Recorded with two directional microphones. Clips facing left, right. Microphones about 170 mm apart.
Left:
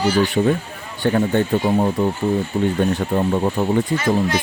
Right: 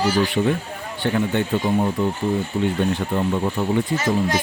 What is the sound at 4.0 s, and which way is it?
Speech, 40° right (ahead or behind).